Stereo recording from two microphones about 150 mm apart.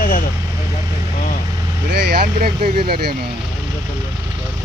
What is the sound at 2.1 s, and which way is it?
Speech, 85° right.